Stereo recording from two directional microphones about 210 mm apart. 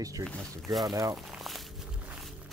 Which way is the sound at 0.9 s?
15° right (ahead or behind).